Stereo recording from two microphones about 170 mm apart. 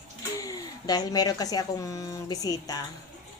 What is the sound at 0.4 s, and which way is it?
Speech, 20° left (ahead or behind).